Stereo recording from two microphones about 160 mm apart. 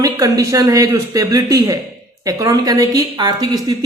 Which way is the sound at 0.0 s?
20° right (ahead or behind).